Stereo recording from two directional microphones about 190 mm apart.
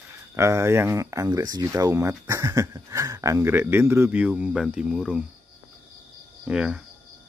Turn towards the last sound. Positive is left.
turn(degrees=-5)  # may be behind; listen again after turning